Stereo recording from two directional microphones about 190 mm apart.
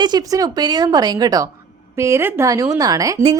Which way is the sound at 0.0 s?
20° right (ahead or behind).